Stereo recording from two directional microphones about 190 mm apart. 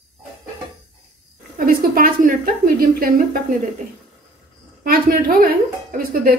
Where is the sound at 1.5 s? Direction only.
50° right (ahead or behind).